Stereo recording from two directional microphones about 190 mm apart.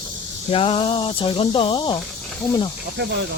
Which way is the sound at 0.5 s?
30° left (ahead or behind).